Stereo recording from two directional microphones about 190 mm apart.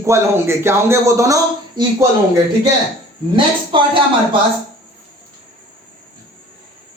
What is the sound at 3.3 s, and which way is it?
Speech, 25° right (ahead or behind).